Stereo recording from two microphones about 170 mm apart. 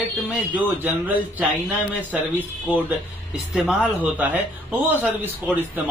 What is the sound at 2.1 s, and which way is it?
Speech, 10° right (ahead or behind).